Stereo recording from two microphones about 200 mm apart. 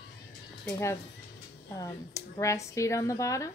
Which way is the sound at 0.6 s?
15° left (ahead or behind).